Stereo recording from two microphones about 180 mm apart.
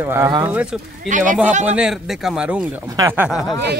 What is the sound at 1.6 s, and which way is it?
Speech, 5° right (ahead or behind).